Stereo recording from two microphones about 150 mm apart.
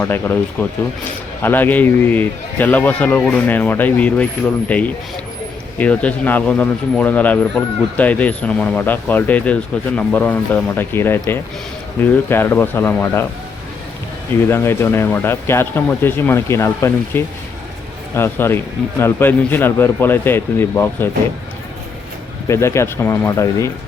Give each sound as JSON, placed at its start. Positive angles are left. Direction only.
{"t": 0.0, "sound": "speech", "side_deg": 15}
{"t": 14.5, "sound": "speech", "side_deg": 15}
{"t": 22.4, "sound": "speech", "side_deg": 20}